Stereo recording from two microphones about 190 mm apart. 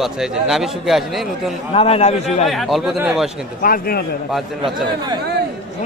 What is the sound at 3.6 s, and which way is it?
Speech, 50° left (ahead or behind).